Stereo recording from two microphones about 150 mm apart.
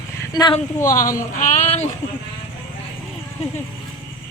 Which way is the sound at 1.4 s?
50° left (ahead or behind).